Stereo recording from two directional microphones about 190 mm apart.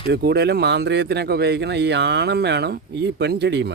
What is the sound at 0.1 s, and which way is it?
A man's voice, 60° right (ahead or behind).